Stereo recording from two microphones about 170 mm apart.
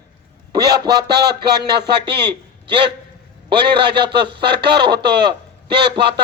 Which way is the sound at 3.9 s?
75° right (ahead or behind).